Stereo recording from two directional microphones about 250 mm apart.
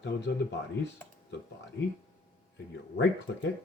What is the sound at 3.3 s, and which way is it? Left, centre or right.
Speech, left.